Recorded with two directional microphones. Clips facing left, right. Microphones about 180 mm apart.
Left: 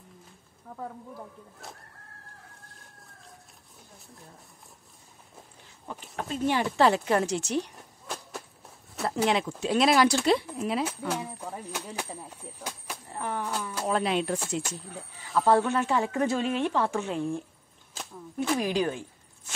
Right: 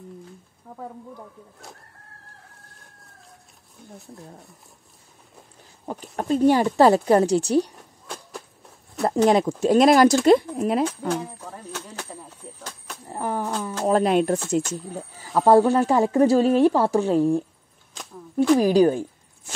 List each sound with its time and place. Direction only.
0.7 s a sound: 10° right (ahead or behind)
6.1 s speech: 40° right (ahead or behind)
8.1 s a sound: centre (ahead or behind)
9.0 s speech: 40° right (ahead or behind)
11.4 s speech: 10° left (ahead or behind)
13.1 s speech: 35° right (ahead or behind)
17.9 s speech: 5° left (ahead or behind)
18.6 s speech: 35° right (ahead or behind)